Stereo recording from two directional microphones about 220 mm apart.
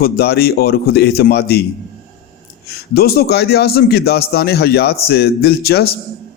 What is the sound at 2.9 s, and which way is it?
A man's voice, 45° left (ahead or behind).